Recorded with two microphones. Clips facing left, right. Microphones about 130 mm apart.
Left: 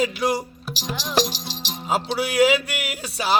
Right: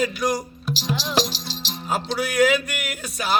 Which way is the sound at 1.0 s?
15° left (ahead or behind).